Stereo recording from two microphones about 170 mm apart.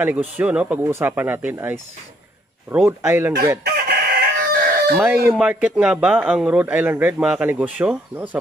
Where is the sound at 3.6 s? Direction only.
70° right (ahead or behind).